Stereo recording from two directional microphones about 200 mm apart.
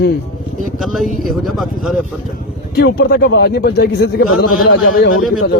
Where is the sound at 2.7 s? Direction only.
55° left (ahead or behind).